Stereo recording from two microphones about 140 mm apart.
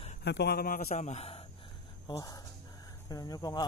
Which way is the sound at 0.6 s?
90° left.